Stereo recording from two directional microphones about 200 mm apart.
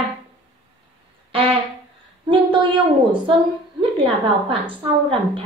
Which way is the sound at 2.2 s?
25° right (ahead or behind).